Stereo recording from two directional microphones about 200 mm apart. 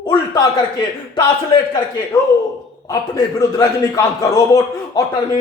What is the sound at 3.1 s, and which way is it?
A man's voice, 15° left (ahead or behind).